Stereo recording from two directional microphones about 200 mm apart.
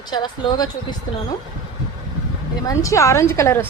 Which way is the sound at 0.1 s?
20° left (ahead or behind).